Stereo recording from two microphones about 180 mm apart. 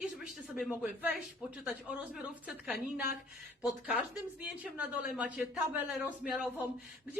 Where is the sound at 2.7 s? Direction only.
60° left (ahead or behind).